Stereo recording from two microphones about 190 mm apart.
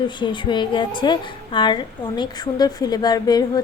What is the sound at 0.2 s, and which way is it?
A woman's voice, 25° left (ahead or behind).